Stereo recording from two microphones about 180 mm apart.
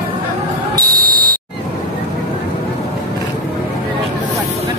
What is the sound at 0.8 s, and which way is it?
Buzzer, 55° right (ahead or behind).